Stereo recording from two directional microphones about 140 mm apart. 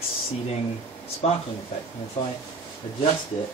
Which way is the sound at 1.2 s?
50° left (ahead or behind).